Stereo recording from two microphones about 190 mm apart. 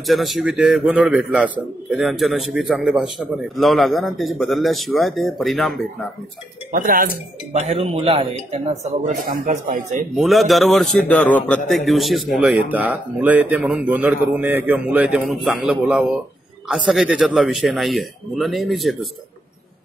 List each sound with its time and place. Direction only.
0.0 s a man's voice: centre (ahead or behind)
6.7 s speech: 45° right (ahead or behind)
7.5 s a man's voice: 35° right (ahead or behind)
10.1 s a man's voice: centre (ahead or behind)